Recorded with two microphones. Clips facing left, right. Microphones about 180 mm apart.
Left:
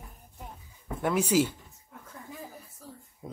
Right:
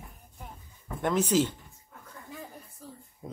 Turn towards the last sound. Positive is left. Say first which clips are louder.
# even
turn(degrees=0)  # may be behind; listen again after turning